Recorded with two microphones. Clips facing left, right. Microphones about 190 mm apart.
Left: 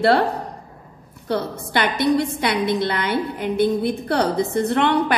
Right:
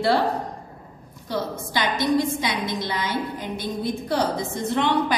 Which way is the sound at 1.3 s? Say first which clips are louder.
Left 4 dB; 60° left (ahead or behind).